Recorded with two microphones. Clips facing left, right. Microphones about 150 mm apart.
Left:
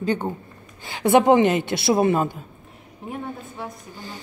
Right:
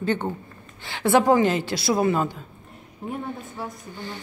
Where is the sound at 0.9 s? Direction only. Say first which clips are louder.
Left 3 dB; 20° left (ahead or behind).